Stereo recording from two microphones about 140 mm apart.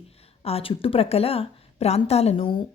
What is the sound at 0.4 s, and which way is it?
A woman's voice, 45° left (ahead or behind).